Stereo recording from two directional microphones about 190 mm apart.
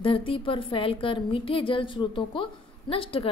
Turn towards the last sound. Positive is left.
turn(degrees=30)  # may be behind; listen again after turning